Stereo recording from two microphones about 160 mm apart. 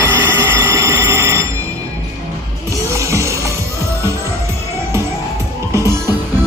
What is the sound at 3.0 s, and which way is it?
Music, 20° right (ahead or behind).